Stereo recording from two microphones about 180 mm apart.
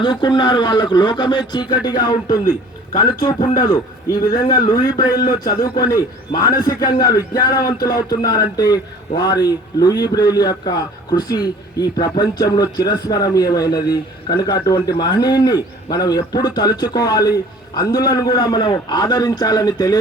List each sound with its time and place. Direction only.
0.0 s a man's voice: 25° left (ahead or behind)